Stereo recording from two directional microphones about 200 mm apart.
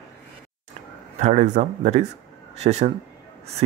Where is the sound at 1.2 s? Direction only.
35° right (ahead or behind).